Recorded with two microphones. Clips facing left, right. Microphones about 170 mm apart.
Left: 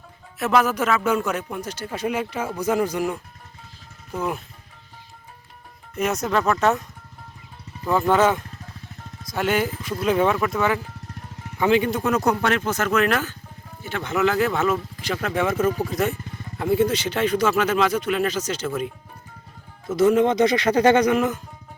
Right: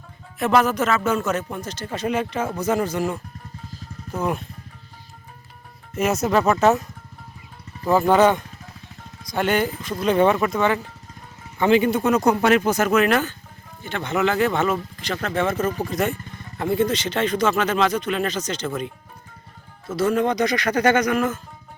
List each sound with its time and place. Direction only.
0.3 s speech: 5° left (ahead or behind)
6.0 s speech: 5° right (ahead or behind)
7.9 s speech: 5° right (ahead or behind)
20.0 s speech: 20° left (ahead or behind)